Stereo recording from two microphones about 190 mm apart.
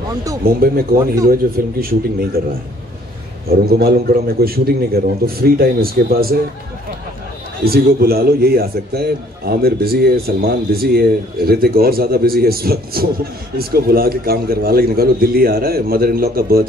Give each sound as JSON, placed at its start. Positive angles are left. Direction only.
{"t": 0.4, "sound": "a man's voice", "side_deg": -50}
{"t": 3.4, "sound": "a man's voice", "side_deg": -55}
{"t": 7.6, "sound": "a man's voice", "side_deg": -55}